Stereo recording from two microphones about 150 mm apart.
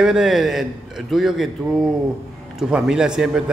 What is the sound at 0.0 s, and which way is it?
A man's voice, 5° right (ahead or behind).